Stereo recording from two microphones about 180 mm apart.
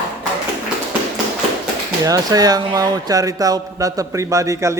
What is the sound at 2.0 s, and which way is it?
Speech, 20° right (ahead or behind).